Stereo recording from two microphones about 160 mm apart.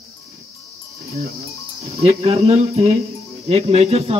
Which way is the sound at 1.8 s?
40° right (ahead or behind).